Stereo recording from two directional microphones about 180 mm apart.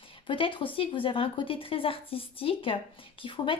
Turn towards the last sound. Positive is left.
turn(degrees=30)  # may be behind; listen again after turning